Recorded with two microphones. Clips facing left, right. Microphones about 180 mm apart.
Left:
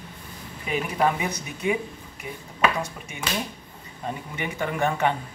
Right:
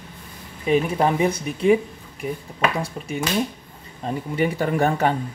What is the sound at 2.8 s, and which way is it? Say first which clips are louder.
Speech: right 5 dB; 35° right (ahead or behind).